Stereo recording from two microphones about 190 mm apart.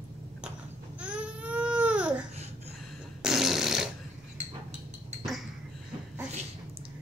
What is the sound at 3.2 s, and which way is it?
Fart, centre (ahead or behind).